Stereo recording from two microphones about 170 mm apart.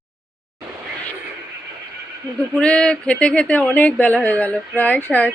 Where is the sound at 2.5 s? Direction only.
5° left (ahead or behind).